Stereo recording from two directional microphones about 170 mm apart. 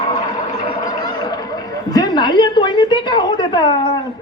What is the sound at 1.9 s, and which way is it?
A woman's voice, 25° left (ahead or behind).